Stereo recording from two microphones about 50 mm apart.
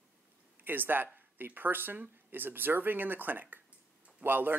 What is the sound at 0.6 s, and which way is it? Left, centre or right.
Speech, right.